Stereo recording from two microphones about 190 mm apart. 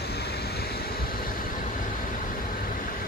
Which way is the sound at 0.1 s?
60° left (ahead or behind).